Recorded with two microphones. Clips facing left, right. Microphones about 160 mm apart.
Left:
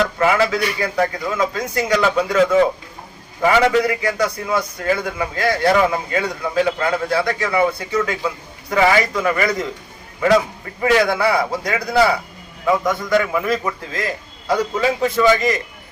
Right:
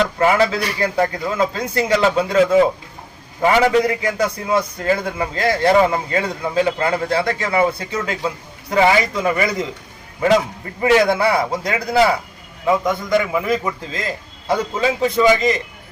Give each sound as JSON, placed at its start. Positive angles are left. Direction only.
{"t": 0.2, "sound": "a man's voice", "side_deg": -30}
{"t": 10.8, "sound": "a man's voice", "side_deg": -25}